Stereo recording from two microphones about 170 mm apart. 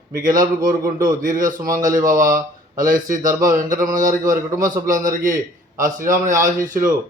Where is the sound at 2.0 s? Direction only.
55° right (ahead or behind).